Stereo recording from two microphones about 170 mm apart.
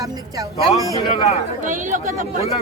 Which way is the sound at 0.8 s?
25° left (ahead or behind).